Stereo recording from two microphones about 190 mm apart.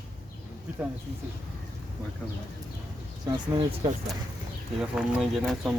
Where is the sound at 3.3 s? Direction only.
25° right (ahead or behind).